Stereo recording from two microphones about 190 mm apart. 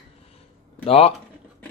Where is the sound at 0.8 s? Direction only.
30° left (ahead or behind).